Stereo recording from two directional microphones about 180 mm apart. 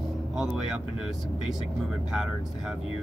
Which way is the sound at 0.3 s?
5° right (ahead or behind).